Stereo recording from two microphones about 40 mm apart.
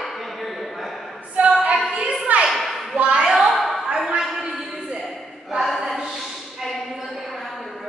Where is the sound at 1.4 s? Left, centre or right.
Right.